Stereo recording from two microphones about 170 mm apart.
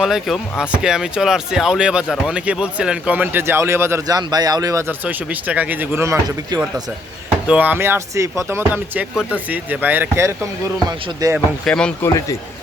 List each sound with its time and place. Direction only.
0.0 s speech: centre (ahead or behind); by 6.6 s 20° right (ahead or behind)
7.4 s speech: 10° right (ahead or behind)
11.3 s speech: 5° left (ahead or behind)